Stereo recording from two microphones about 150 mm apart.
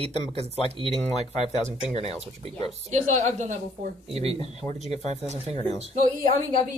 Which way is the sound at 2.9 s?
55° right (ahead or behind).